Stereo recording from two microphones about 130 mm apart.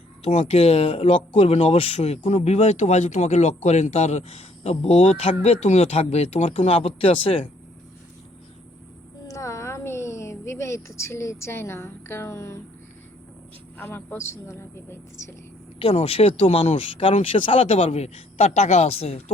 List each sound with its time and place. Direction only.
0.2 s speech: 55° left (ahead or behind)
9.2 s a woman's voice: 25° left (ahead or behind)
13.7 s a woman's voice: 15° left (ahead or behind)
15.8 s speech: 50° left (ahead or behind)